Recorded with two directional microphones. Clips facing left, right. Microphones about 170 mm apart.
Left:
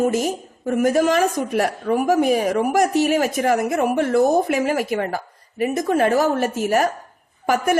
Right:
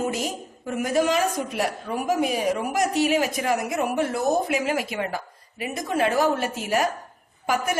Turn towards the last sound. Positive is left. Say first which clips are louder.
# left 6 dB
turn(degrees=50)  # may be behind; listen again after turning